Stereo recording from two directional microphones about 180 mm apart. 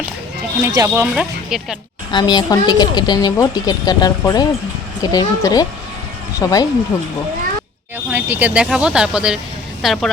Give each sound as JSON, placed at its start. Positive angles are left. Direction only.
{"t": 0.6, "sound": "speech", "side_deg": -15}
{"t": 1.1, "sound": "speech", "side_deg": 0}
{"t": 2.1, "sound": "speech", "side_deg": 25}
{"t": 8.1, "sound": "speech", "side_deg": -10}